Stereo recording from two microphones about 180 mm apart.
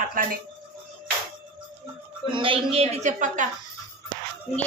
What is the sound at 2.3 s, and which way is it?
A woman's voice, 30° right (ahead or behind).